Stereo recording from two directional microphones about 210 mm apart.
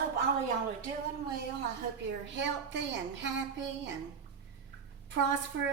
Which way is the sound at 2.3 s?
60° right (ahead or behind).